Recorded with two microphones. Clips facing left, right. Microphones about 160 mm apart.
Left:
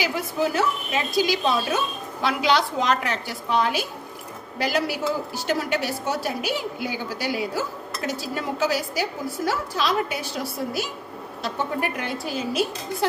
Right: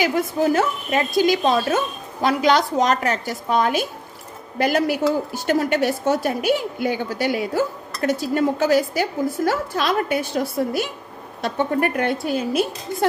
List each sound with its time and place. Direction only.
0.0 s a woman's voice: 50° right (ahead or behind)